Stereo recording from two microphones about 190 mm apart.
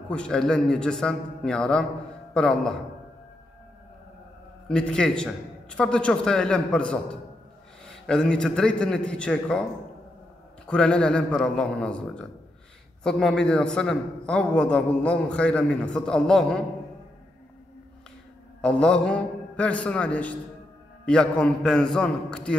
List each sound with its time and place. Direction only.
0.1 s a man's voice: 5° left (ahead or behind)
4.6 s a man's voice: 5° left (ahead or behind)
10.7 s a man's voice: 5° left (ahead or behind)
18.6 s a man's voice: 5° left (ahead or behind)